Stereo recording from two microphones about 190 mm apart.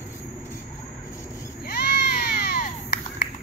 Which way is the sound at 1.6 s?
55° left (ahead or behind).